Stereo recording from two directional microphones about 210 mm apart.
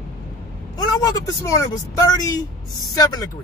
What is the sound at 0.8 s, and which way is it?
Speech, 20° left (ahead or behind).